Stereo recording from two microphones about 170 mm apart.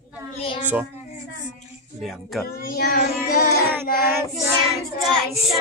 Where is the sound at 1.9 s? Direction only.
Centre (ahead or behind).